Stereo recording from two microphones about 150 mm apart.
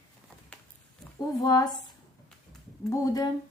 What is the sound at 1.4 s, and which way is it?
Speech, 25° left (ahead or behind).